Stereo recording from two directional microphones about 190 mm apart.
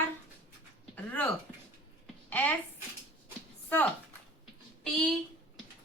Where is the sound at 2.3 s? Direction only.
5° left (ahead or behind).